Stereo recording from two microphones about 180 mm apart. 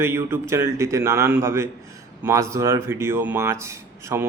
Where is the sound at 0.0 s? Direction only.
15° right (ahead or behind).